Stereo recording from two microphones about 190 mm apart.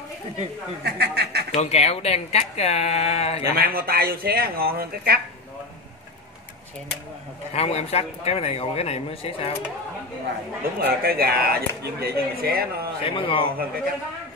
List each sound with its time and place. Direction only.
0.8 s speech: 60° right (ahead or behind)
1.5 s speech: 35° left (ahead or behind)
3.5 s speech: 50° right (ahead or behind)
7.5 s speech: 35° left (ahead or behind)
10.8 s speech: 55° right (ahead or behind)
13.0 s a man's voice: 25° left (ahead or behind)